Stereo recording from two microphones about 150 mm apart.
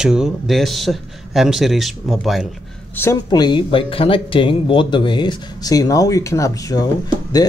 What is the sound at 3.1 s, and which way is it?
Speech, 25° left (ahead or behind).